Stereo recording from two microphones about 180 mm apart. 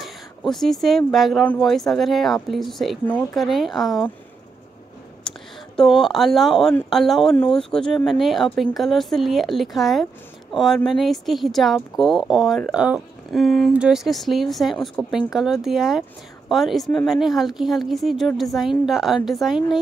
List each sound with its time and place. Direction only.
0.0 s speech: centre (ahead or behind)
5.8 s speech: centre (ahead or behind)